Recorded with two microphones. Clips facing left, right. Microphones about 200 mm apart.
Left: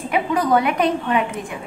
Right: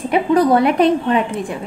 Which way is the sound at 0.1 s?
35° right (ahead or behind).